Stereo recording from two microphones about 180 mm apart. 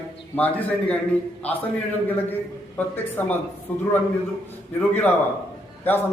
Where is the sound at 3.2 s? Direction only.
10° left (ahead or behind).